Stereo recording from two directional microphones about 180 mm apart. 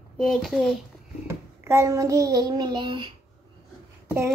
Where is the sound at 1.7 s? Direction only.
15° right (ahead or behind).